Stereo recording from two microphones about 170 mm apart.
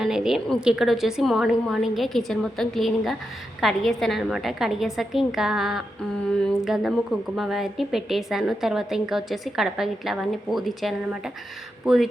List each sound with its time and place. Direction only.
0.0 s a woman's voice: 5° right (ahead or behind)